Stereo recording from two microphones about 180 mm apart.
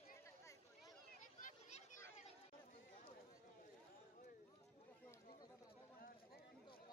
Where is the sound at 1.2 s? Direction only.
45° left (ahead or behind).